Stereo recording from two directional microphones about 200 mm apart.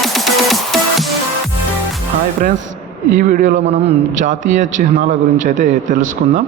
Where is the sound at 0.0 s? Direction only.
Centre (ahead or behind).